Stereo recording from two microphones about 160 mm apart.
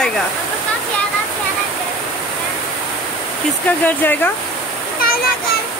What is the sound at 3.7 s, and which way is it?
Speech, 10° left (ahead or behind).